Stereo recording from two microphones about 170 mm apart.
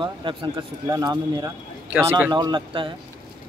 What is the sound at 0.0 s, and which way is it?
Speech, 30° right (ahead or behind).